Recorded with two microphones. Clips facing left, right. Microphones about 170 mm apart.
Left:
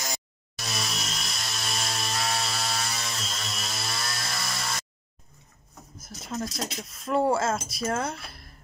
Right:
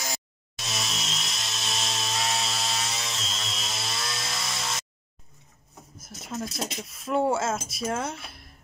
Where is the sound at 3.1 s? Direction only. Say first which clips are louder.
Even; 5° left (ahead or behind).